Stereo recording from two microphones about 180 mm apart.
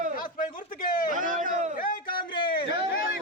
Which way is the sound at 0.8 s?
50° left (ahead or behind).